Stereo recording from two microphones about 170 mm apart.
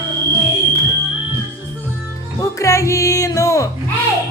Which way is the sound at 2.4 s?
20° left (ahead or behind).